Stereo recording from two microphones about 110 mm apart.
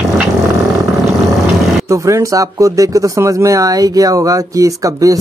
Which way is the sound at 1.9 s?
30° right (ahead or behind).